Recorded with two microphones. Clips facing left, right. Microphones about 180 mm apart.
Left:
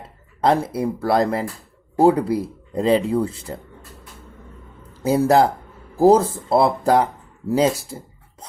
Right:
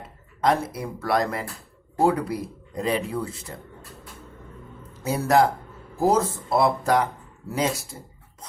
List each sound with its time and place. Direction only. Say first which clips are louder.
0.4 s speech: left 5 dB; 30° left (ahead or behind)
5.0 s speech: left 4 dB; 30° left (ahead or behind)